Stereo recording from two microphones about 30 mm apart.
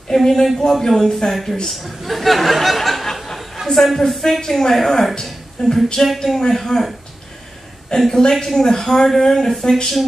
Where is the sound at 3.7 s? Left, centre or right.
Centre.